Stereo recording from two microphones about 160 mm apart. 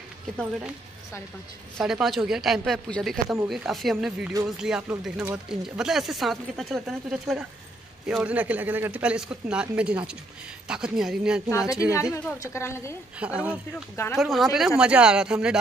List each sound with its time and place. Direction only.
1.8 s speech: centre (ahead or behind)
11.5 s a woman's voice: 20° left (ahead or behind)
13.2 s speech: 10° right (ahead or behind)